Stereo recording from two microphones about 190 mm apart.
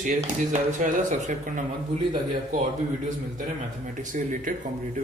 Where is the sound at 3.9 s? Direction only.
40° right (ahead or behind).